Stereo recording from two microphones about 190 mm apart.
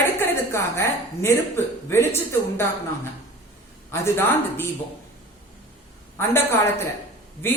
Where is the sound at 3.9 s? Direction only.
10° left (ahead or behind).